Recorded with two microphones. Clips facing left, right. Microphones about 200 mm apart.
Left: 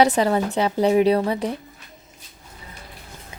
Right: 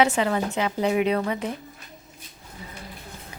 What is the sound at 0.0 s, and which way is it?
A woman's voice, 35° left (ahead or behind).